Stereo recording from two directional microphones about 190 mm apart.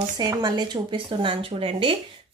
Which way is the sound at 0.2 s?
20° right (ahead or behind).